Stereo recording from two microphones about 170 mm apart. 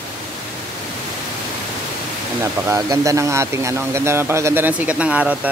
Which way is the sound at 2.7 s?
20° right (ahead or behind).